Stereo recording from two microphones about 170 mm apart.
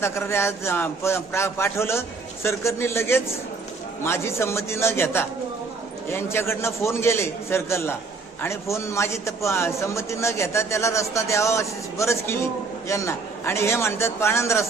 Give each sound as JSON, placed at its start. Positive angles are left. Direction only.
{"t": 0.0, "sound": "a man's voice", "side_deg": 15}